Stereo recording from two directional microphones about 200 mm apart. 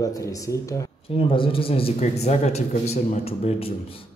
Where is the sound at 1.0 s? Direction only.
25° left (ahead or behind).